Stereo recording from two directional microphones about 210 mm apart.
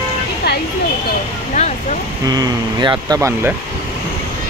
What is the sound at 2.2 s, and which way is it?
Speech, 20° right (ahead or behind).